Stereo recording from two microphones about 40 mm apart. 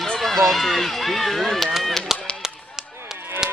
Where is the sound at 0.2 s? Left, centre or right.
Centre.